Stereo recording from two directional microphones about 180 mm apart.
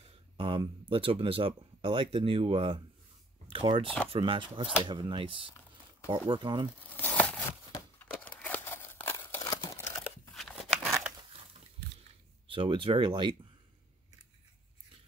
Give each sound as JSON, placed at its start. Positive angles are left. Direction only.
{"t": 0.0, "sound": "speech", "side_deg": -30}
{"t": 6.9, "sound": "tearing", "side_deg": 10}
{"t": 7.7, "sound": "crumpling", "side_deg": 10}
{"t": 10.3, "sound": "a sound", "side_deg": 0}
{"t": 12.4, "sound": "speech", "side_deg": -30}